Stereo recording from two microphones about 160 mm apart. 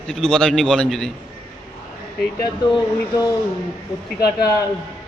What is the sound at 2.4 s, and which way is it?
Speech, 25° left (ahead or behind).